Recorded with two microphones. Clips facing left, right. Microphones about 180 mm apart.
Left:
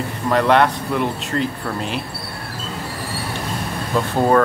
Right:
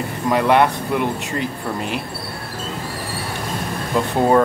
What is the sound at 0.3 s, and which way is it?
Speech, 10° right (ahead or behind).